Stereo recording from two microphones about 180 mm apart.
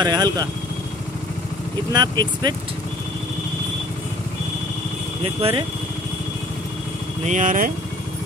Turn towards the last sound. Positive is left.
turn(degrees=-45)  # may be behind; listen again after turning